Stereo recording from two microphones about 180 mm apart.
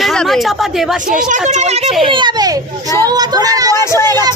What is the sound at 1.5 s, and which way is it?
Speech, 40° right (ahead or behind).